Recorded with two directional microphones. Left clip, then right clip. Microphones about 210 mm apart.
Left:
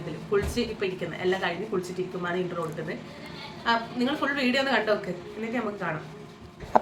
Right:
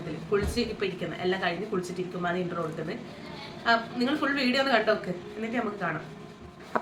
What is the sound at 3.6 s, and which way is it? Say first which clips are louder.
A woman's voice: right 1 dB; centre (ahead or behind).